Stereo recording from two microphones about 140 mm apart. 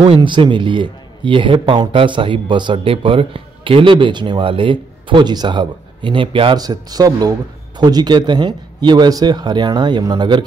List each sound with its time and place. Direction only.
0.0 s speech: 40° right (ahead or behind)
6.6 s speech: 25° right (ahead or behind)